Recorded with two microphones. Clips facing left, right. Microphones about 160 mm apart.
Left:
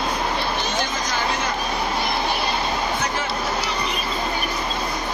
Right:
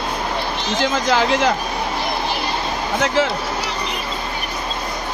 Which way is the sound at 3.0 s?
90° right.